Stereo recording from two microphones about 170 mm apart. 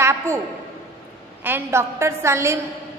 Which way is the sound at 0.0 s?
15° right (ahead or behind).